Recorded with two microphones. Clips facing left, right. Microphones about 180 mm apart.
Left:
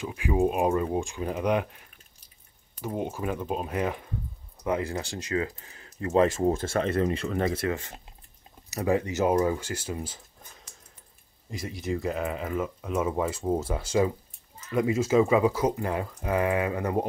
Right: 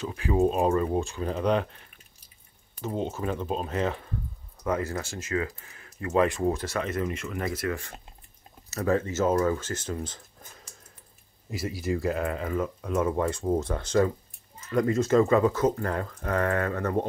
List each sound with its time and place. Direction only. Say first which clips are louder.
0.0 s speech: right 1 dB; 15° left (ahead or behind)
4.8 s speech: left 1 dB; 25° left (ahead or behind); by 10.2 s 10° left (ahead or behind)
11.5 s speech: right 2 dB; 5° right (ahead or behind)